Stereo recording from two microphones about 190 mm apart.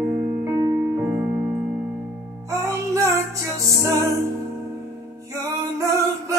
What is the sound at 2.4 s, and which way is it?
Music, 15° right (ahead or behind).